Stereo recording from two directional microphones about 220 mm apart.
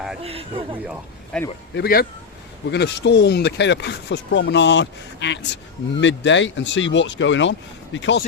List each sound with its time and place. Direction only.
0.2 s a man's voice: 25° right (ahead or behind)
1.3 s a man's voice: 5° left (ahead or behind)
1.7 s speech: 45° left (ahead or behind)